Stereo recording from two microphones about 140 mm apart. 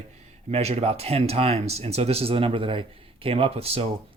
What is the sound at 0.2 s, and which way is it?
Speech, 50° right (ahead or behind).